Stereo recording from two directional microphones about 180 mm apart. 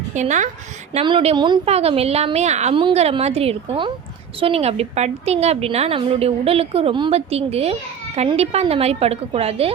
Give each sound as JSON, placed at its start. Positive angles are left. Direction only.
{"t": 0.1, "sound": "a woman's voice", "side_deg": -40}
{"t": 0.9, "sound": "a woman's voice", "side_deg": -30}